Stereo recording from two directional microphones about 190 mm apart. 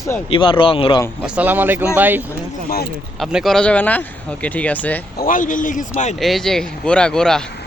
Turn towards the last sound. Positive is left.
turn(degrees=5)  # may be behind; listen again after turning